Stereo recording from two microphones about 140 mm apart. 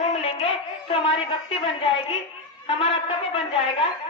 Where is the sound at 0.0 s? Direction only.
50° left (ahead or behind).